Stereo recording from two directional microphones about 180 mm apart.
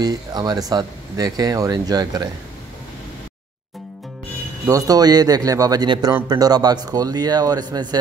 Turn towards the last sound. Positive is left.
turn(degrees=-20)  # may be behind; listen again after turning